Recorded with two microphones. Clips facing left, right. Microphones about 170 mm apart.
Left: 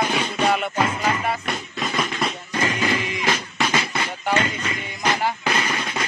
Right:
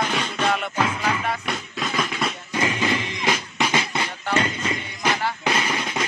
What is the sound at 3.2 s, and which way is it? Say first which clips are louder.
Music: right 2 dB; 20° right (ahead or behind).